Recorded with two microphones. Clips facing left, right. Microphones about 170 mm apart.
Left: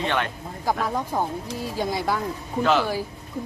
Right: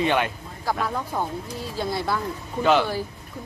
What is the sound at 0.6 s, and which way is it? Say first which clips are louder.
Speech: left 1 dB; 15° left (ahead or behind).